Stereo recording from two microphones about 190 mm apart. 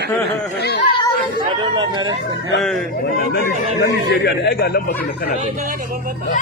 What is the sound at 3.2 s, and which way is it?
Speech, 55° left (ahead or behind).